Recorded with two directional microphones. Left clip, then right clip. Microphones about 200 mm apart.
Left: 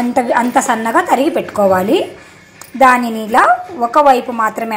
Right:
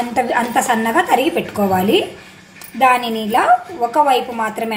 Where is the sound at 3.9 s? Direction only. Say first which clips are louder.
Left 5 dB; centre (ahead or behind).